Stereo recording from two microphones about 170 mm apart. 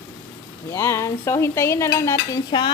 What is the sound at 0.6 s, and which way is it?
Stir, 15° left (ahead or behind).